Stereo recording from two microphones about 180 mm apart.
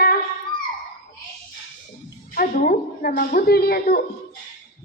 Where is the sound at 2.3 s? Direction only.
50° left (ahead or behind).